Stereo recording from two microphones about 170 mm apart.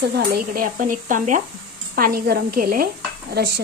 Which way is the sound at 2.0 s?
60° right (ahead or behind).